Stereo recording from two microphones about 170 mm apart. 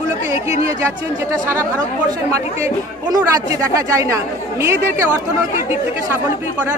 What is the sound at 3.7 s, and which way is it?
Speech, 20° right (ahead or behind).